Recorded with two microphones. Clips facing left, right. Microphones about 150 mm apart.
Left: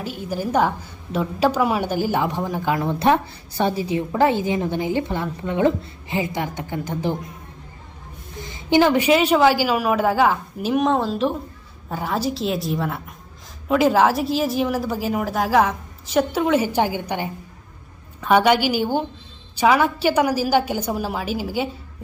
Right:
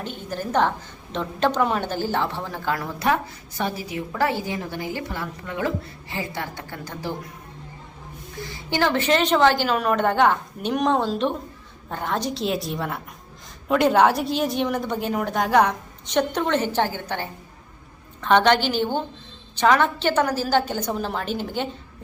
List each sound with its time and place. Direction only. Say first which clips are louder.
0.0 s a woman's voice: left 4 dB; 5° left (ahead or behind)
8.4 s a woman's voice: left 7 dB; 20° left (ahead or behind)